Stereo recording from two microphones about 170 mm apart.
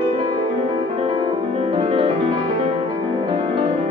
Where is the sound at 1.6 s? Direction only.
35° right (ahead or behind).